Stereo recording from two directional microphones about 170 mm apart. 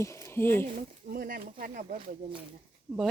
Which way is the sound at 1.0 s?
60° right (ahead or behind).